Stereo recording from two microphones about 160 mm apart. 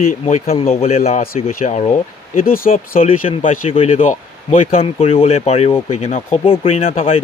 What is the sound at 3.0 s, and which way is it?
Speech, 35° left (ahead or behind).